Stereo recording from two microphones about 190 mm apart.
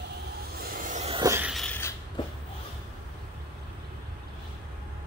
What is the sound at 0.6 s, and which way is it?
Vehicle, 50° right (ahead or behind).